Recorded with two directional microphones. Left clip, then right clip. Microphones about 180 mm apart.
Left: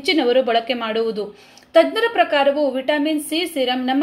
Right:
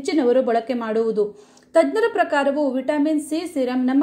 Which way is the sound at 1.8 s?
35° right (ahead or behind).